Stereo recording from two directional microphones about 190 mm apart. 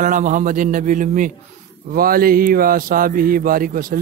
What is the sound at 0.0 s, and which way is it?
A man's voice, 40° right (ahead or behind).